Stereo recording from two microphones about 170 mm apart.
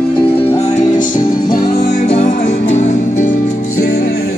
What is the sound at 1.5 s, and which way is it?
Music, 35° left (ahead or behind).